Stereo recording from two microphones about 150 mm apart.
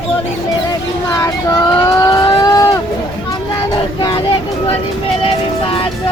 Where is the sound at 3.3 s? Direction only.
25° left (ahead or behind).